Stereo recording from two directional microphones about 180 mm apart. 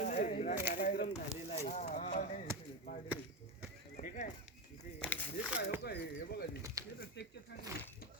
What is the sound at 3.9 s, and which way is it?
Speech, 45° left (ahead or behind).